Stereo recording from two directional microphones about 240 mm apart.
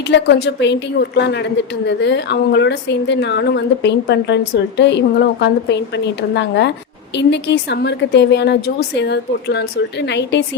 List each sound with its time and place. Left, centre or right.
0.1 s a woman's voice: left